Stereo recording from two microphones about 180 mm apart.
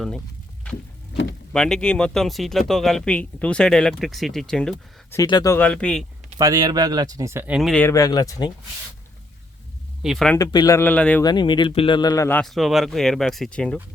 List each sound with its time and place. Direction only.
1.1 s speech: 85° left
1.5 s speech: 5° left (ahead or behind)
5.1 s speech: 20° left (ahead or behind)
5.5 s speech: 5° left (ahead or behind)
6.4 s speech: 20° right (ahead or behind); by 7.8 s 5° right (ahead or behind)
7.8 s speech: 15° left (ahead or behind)
10.0 s speech: centre (ahead or behind)
10.3 s speech: 20° left (ahead or behind)
11.2 s speech: 25° left (ahead or behind)
12.4 s speech: centre (ahead or behind)